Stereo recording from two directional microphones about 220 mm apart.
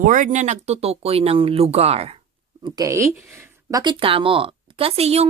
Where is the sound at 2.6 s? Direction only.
15° right (ahead or behind).